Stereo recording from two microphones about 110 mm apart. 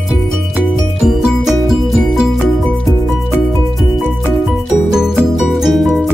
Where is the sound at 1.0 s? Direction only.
5° right (ahead or behind).